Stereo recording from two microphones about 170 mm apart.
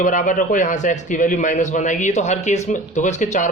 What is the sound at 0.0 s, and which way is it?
A man's voice, 50° left (ahead or behind).